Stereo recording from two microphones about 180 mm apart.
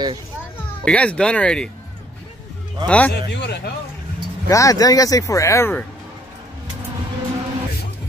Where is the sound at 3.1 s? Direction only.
70° left (ahead or behind).